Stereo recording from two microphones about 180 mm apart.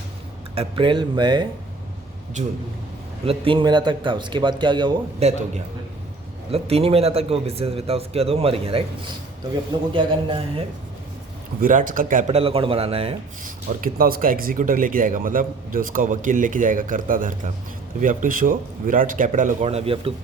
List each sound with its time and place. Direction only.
0.5 s a man's voice: 30° right (ahead or behind)
2.4 s a man's voice: 40° right (ahead or behind)
3.2 s a man's voice: 30° right (ahead or behind)
6.5 s a man's voice: 35° right (ahead or behind)
9.9 s a man's voice: 30° right (ahead or behind)
11.6 s speech: 50° right (ahead or behind)
12.4 s a man's voice: 30° right (ahead or behind)
13.4 s speech: 50° right (ahead or behind); by 20.1 s 30° right (ahead or behind)